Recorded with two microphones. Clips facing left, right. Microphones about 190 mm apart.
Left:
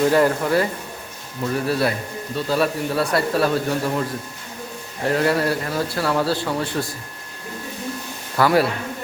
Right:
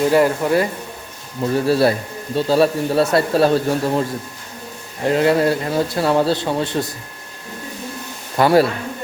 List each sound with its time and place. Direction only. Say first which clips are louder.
0.0 s speech: right 2 dB; 15° right (ahead or behind)
1.4 s a man's voice: right 5 dB; 30° right (ahead or behind)
5.0 s a man's voice: right 4 dB; 20° right (ahead or behind)
8.4 s a man's voice: right 4 dB; 30° right (ahead or behind)